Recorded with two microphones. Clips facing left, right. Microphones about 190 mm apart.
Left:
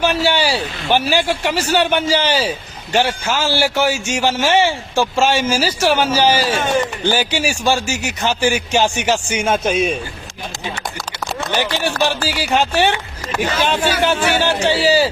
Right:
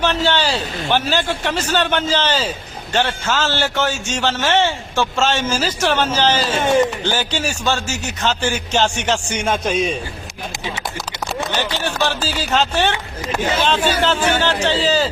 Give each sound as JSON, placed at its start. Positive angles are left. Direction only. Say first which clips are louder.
{"t": 0.0, "sound": "a man's voice", "louder": "left 2 dB", "side_deg": 10}
{"t": 6.6, "sound": "speech", "louder": "right 3 dB", "side_deg": -25}
{"t": 7.0, "sound": "a man's voice", "louder": "left 3 dB", "side_deg": 10}
{"t": 11.8, "sound": "a man's voice", "louder": "left 2 dB", "side_deg": 10}
{"t": 13.2, "sound": "speech", "louder": "right 1 dB", "side_deg": -20}
{"t": 13.7, "sound": "a man's voice", "louder": "left 1 dB", "side_deg": 10}